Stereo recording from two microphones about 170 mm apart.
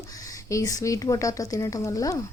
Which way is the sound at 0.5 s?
20° left (ahead or behind).